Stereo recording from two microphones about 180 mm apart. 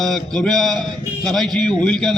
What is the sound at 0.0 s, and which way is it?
A man's voice, 5° left (ahead or behind).